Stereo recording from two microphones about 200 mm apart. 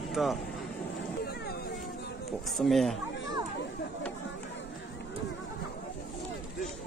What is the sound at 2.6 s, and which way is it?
Speech, centre (ahead or behind).